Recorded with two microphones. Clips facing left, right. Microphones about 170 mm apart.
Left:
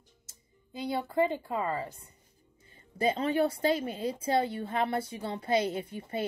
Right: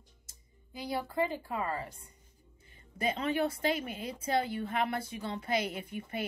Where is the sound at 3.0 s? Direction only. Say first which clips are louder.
Left 4 dB; 30° left (ahead or behind).